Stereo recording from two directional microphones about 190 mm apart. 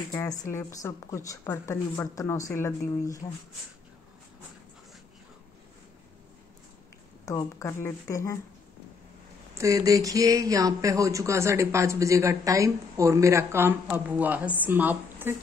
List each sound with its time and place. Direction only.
0.1 s speech: 15° left (ahead or behind)
7.2 s speech: 15° left (ahead or behind)
9.6 s speech: 15° right (ahead or behind)